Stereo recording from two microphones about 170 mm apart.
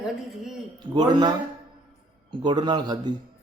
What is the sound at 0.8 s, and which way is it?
Speech, 25° right (ahead or behind).